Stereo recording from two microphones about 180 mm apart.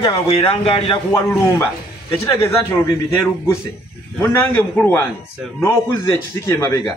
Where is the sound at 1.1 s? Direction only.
15° left (ahead or behind).